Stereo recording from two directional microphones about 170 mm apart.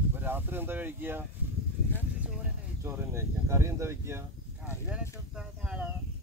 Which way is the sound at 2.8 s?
15° right (ahead or behind).